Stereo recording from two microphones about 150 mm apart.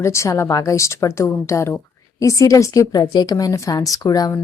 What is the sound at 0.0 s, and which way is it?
A woman's voice, 20° left (ahead or behind).